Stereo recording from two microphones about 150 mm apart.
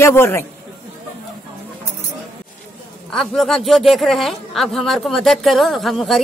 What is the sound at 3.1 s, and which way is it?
Speech, 5° left (ahead or behind).